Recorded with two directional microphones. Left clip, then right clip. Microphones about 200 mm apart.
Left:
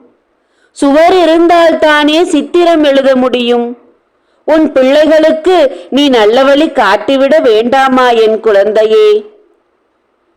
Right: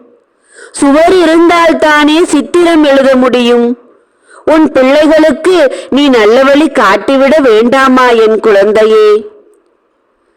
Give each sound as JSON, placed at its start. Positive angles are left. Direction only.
{"t": 0.9, "sound": "a man's voice", "side_deg": -40}